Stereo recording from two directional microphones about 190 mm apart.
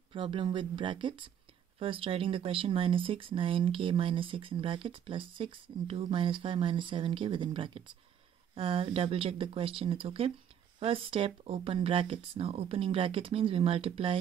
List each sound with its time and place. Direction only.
0.1 s speech: 25° right (ahead or behind)